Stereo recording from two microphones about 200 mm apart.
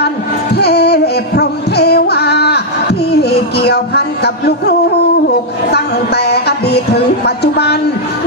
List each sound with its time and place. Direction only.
0.5 s music: 55° left (ahead or behind)
5.7 s music: 55° left (ahead or behind)